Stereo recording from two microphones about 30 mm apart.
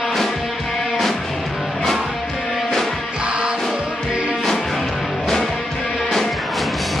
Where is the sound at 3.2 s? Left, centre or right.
Right.